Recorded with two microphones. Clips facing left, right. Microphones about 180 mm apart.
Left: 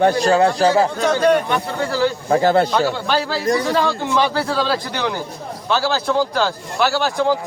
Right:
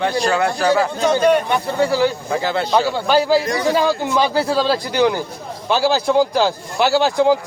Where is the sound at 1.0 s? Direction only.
20° right (ahead or behind).